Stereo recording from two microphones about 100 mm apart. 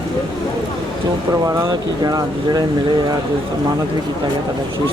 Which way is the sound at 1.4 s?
30° right (ahead or behind).